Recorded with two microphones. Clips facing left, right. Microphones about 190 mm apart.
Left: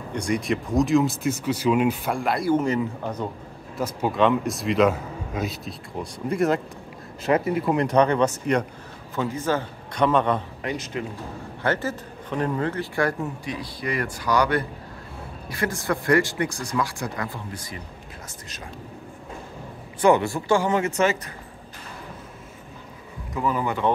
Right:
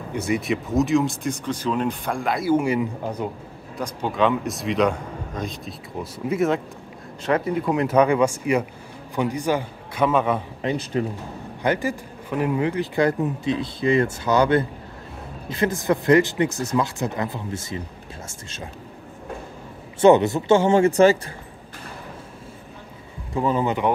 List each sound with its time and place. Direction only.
0.1 s speech: 5° right (ahead or behind)
3.7 s a man's voice: 5° left (ahead or behind)
10.6 s speech: 30° right (ahead or behind)
11.6 s speech: 15° right (ahead or behind)
20.0 s speech: 20° right (ahead or behind)
23.3 s speech: 25° right (ahead or behind)